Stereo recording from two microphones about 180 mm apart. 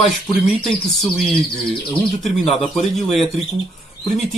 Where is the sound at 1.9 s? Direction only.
Centre (ahead or behind).